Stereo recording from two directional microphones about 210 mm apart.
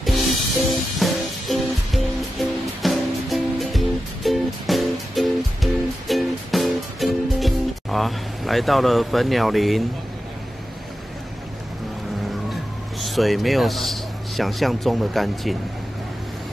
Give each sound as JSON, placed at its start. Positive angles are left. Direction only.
{"t": 0.7, "sound": "music", "side_deg": 0}
{"t": 13.0, "sound": "speech", "side_deg": 0}